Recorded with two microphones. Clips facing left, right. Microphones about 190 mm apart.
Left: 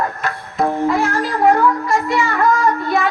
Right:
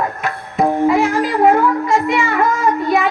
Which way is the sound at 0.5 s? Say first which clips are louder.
Right 3 dB; 10° right (ahead or behind).